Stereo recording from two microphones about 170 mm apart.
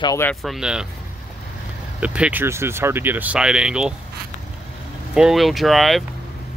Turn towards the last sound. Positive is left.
turn(degrees=0)  # may be behind; listen again after turning